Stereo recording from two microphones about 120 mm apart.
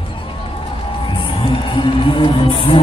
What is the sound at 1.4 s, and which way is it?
Music, 45° left (ahead or behind).